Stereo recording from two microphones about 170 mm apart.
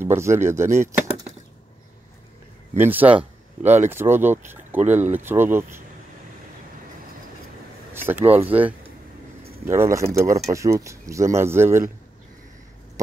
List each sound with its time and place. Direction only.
0.0 s speech: 15° right (ahead or behind)
2.8 s speech: 10° right (ahead or behind)
7.9 s speech: 10° right (ahead or behind)